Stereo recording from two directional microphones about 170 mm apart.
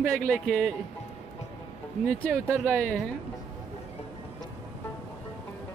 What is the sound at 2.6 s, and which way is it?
Speech, 5° left (ahead or behind).